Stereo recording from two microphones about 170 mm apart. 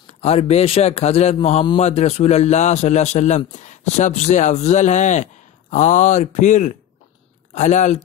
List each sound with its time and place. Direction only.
0.0 s a man's voice: 40° left (ahead or behind)